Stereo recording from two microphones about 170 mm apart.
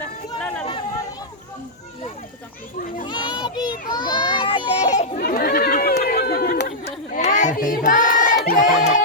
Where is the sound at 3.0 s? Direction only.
25° left (ahead or behind); by 5.2 s 45° left (ahead or behind).